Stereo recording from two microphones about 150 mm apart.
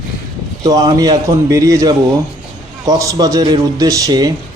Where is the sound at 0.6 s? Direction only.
25° right (ahead or behind).